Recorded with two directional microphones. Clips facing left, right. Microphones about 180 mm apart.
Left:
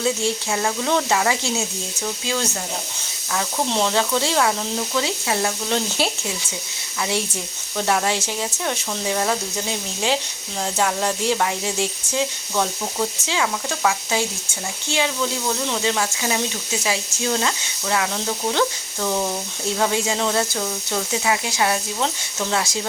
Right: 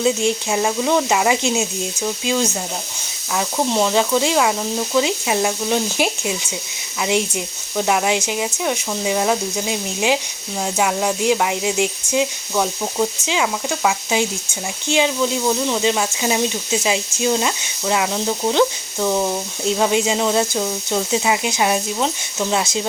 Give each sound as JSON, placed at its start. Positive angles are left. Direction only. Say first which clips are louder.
{"t": 0.0, "sound": "speech", "louder": "right 4 dB", "side_deg": -20}